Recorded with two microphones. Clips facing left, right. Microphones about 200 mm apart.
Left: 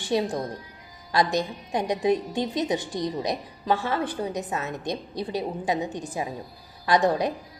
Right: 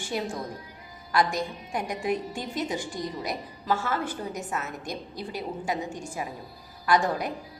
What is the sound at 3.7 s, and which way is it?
Speech, 30° left (ahead or behind).